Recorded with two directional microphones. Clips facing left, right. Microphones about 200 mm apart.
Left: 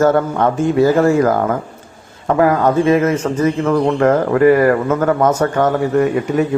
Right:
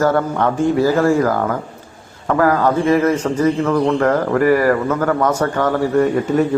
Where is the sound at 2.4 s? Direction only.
20° left (ahead or behind).